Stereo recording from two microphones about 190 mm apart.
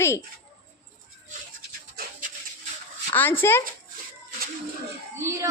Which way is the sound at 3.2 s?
10° left (ahead or behind).